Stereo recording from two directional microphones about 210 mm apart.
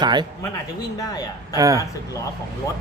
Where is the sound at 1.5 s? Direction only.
15° right (ahead or behind).